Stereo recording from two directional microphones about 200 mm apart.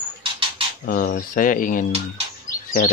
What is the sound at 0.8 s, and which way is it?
Speech, 45° left (ahead or behind).